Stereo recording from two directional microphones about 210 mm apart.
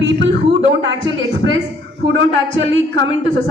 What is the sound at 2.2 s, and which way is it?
Speech, 65° right (ahead or behind).